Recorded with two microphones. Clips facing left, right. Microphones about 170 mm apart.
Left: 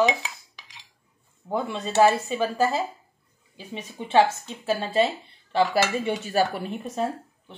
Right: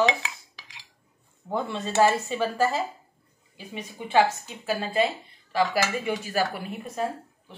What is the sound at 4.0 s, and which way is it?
Dishes, 25° left (ahead or behind).